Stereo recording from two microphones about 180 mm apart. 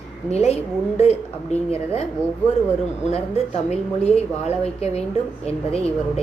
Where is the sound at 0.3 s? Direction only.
35° left (ahead or behind).